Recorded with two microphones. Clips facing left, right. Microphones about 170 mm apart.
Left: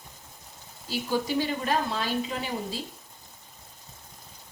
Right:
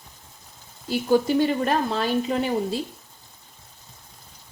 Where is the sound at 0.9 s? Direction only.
50° right (ahead or behind).